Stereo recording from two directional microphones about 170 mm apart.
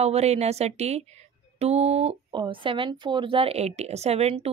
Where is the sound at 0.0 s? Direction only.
40° right (ahead or behind).